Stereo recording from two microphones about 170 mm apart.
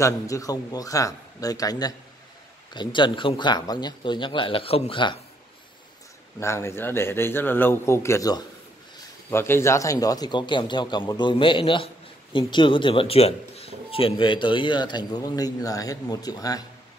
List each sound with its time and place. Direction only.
0.0 s speech: 20° left (ahead or behind)
6.4 s a man's voice: 15° left (ahead or behind)